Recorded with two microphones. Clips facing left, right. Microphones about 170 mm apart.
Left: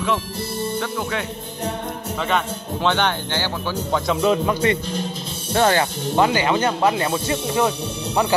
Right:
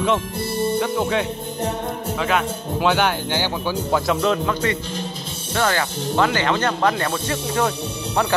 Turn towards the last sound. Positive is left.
turn(degrees=15)  # may be behind; listen again after turning